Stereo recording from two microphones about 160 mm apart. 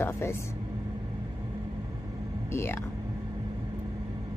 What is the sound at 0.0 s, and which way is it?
Music, 15° left (ahead or behind).